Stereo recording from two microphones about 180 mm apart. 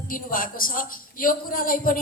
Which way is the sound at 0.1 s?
50° left (ahead or behind).